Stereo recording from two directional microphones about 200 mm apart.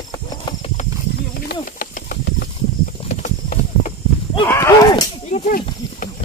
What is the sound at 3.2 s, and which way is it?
Clip-clop, 35° left (ahead or behind).